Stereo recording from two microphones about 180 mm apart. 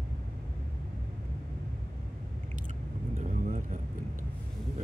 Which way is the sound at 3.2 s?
45° right (ahead or behind).